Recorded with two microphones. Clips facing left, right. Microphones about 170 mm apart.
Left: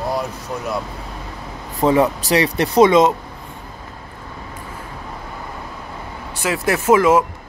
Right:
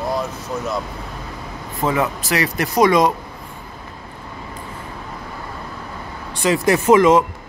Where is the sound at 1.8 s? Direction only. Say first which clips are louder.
Left 5 dB; 35° left (ahead or behind).